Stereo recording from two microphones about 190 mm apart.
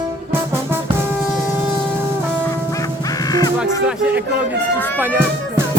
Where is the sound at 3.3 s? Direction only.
20° left (ahead or behind).